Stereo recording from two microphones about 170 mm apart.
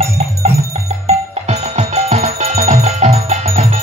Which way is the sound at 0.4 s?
40° right (ahead or behind).